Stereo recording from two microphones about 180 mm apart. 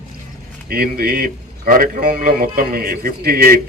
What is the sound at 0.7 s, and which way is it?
A man's voice, 60° right (ahead or behind).